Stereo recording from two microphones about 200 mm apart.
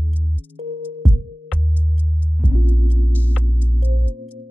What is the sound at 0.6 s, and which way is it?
Music, 30° right (ahead or behind).